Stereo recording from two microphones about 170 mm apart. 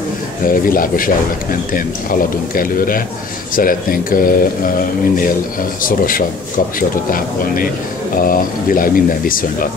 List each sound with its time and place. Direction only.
0.5 s speech: 55° left (ahead or behind)